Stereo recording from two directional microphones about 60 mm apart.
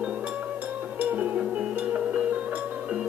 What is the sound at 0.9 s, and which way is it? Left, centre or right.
Music, right.